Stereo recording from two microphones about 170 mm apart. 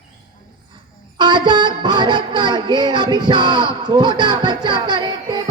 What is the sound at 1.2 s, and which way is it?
Music, 25° right (ahead or behind).